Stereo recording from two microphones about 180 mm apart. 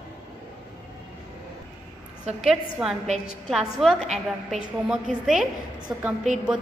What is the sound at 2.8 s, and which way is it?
A woman's voice, 5° right (ahead or behind).